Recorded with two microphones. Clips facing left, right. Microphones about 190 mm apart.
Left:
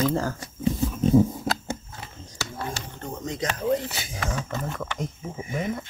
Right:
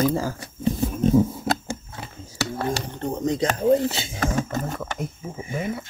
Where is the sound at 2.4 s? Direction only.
65° right (ahead or behind).